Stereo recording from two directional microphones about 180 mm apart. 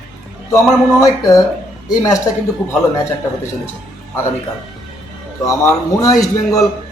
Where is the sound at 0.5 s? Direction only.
15° left (ahead or behind).